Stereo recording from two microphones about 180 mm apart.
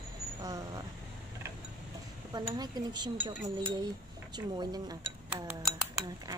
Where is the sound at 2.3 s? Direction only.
20° right (ahead or behind).